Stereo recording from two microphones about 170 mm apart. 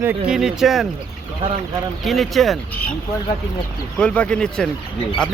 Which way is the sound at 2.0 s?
Centre (ahead or behind).